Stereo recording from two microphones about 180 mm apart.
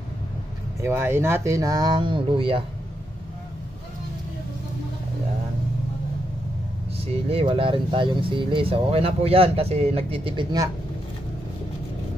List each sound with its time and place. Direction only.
0.7 s speech: 15° right (ahead or behind); by 2.6 s 30° right (ahead or behind)
7.2 s speech: 30° right (ahead or behind)